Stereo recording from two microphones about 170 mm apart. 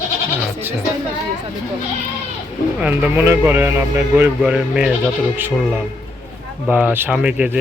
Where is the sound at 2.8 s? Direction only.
10° right (ahead or behind).